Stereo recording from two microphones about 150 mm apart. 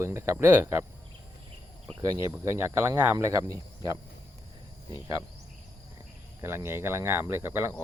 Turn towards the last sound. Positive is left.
turn(degrees=-15)  # may be behind; listen again after turning